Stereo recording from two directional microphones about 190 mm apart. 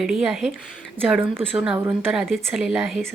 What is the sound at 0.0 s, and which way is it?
Speech, centre (ahead or behind).